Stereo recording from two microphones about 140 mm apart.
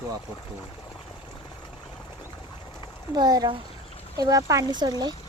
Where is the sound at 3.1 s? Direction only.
30° right (ahead or behind).